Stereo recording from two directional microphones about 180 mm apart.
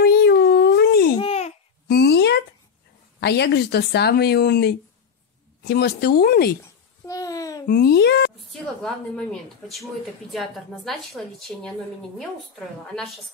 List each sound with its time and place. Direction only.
0.0 s a sound: 65° left (ahead or behind)
1.1 s babbling: 35° left (ahead or behind)
1.9 s a sound: 65° left (ahead or behind)
3.2 s speech: 70° left (ahead or behind)
7.1 s babbling: 20° left (ahead or behind)
7.6 s speech: 55° left (ahead or behind)
8.5 s a woman's voice: 5° left (ahead or behind)
10.3 s a woman's voice: centre (ahead or behind)
12.2 s a woman's voice: centre (ahead or behind)